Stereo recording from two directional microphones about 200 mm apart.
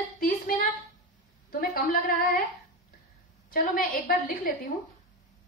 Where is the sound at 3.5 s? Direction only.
45° left (ahead or behind).